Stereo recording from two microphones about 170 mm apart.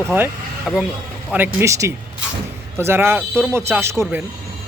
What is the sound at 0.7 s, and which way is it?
Speech, 5° right (ahead or behind).